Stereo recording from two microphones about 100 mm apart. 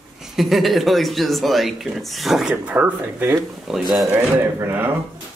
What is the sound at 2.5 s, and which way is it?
Speech, 15° right (ahead or behind).